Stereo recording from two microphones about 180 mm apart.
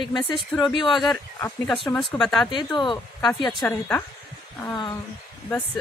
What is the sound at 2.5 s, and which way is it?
Speech, 25° left (ahead or behind).